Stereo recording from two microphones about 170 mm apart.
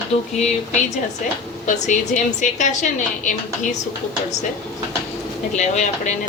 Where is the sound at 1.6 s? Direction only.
45° left (ahead or behind).